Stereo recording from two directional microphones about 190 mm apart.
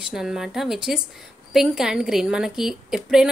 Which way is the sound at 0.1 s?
5° right (ahead or behind).